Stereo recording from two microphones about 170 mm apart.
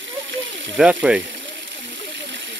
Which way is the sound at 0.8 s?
5° right (ahead or behind).